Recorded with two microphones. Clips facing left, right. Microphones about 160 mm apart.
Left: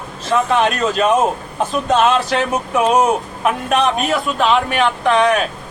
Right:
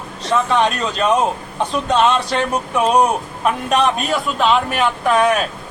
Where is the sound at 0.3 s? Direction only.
5° left (ahead or behind).